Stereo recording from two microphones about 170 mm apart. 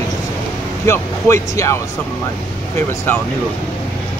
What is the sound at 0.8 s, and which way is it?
Speech, 15° left (ahead or behind).